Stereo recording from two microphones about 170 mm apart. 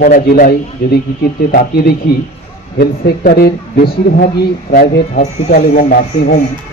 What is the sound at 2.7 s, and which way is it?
Speech, 70° left (ahead or behind).